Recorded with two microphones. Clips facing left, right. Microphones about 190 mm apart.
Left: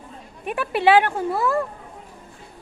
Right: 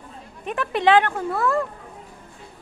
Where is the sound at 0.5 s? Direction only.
10° left (ahead or behind).